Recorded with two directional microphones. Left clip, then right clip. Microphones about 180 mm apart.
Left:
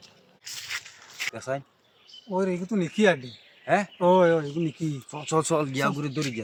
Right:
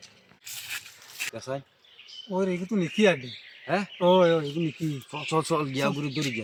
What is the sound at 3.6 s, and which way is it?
Speech, 15° left (ahead or behind).